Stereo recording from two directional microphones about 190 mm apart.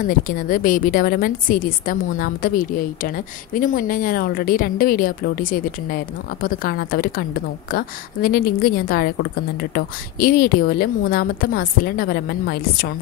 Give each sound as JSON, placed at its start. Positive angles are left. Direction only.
{"t": 0.0, "sound": "a woman's voice", "side_deg": 45}